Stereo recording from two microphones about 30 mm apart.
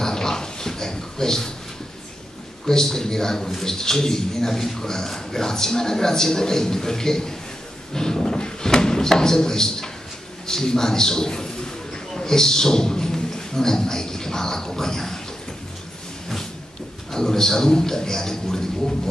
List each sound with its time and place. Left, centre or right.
0.0 s a sound: left
2.6 s a man's voice: centre
7.9 s drawer open or close: left
10.4 s a man's voice: left
17.1 s a man's voice: centre